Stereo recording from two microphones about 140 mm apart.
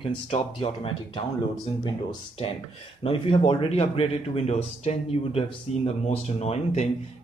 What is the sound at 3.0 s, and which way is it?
Speech, 45° left (ahead or behind).